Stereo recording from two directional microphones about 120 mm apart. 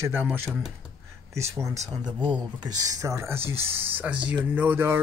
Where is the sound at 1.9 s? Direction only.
40° right (ahead or behind); by 5.0 s 20° right (ahead or behind).